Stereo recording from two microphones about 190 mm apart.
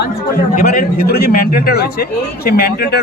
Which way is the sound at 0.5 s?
45° left (ahead or behind).